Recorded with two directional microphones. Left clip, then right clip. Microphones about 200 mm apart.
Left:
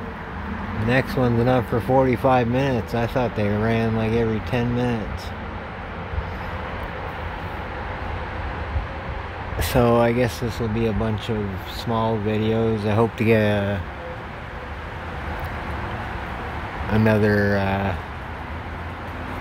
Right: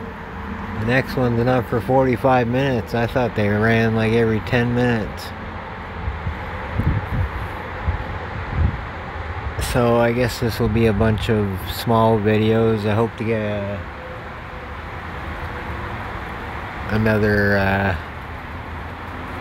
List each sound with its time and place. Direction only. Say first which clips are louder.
0.8 s speech: right 1 dB; 5° right (ahead or behind)
9.7 s speech: right 1 dB; 5° left (ahead or behind)
10.4 s speech: right 5 dB; 20° right (ahead or behind)
13.2 s speech: left 3 dB; 20° left (ahead or behind)
16.9 s speech: right 1 dB; centre (ahead or behind)